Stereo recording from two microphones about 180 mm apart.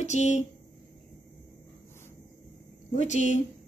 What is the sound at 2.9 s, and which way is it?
Speech, 40° left (ahead or behind).